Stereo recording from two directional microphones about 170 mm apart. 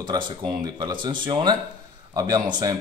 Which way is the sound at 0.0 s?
25° right (ahead or behind).